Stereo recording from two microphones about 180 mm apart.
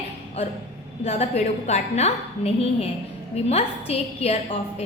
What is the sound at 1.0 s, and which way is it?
A woman's voice, 35° left (ahead or behind).